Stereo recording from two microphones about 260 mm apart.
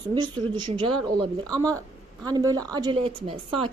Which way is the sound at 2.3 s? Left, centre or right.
Centre.